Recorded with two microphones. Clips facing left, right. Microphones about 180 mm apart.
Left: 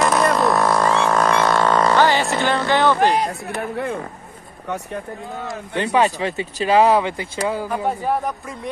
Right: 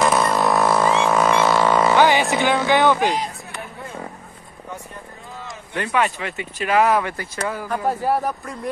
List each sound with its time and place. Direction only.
0.0 s a sound: 5° right (ahead or behind)
0.9 s vehicle: 10° right (ahead or behind)
2.2 s speech: centre (ahead or behind)
3.1 s speech: 60° left (ahead or behind)
5.8 s speech: 35° left (ahead or behind)
6.8 s speech: 20° left (ahead or behind)
7.6 s speech: 5° left (ahead or behind)